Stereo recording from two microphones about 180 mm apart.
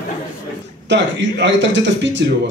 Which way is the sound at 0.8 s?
75° right (ahead or behind).